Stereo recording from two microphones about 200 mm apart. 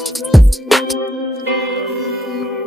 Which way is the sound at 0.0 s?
Centre (ahead or behind).